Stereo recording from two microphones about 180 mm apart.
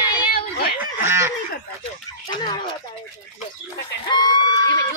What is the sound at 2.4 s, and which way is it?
Speech, 25° left (ahead or behind).